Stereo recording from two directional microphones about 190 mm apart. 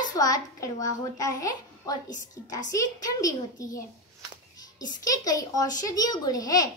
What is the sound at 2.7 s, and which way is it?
A child's voice, 20° left (ahead or behind).